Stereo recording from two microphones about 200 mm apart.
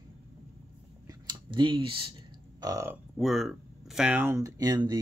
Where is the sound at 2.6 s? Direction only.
15° right (ahead or behind).